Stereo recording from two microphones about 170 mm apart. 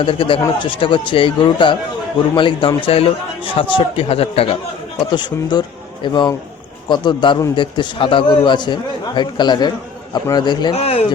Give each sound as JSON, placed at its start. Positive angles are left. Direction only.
{"t": 0.0, "sound": "a man's voice", "side_deg": 30}
{"t": 10.8, "sound": "a man's voice", "side_deg": 35}